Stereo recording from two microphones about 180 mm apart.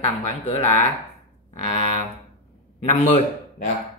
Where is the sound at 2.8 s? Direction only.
40° left (ahead or behind).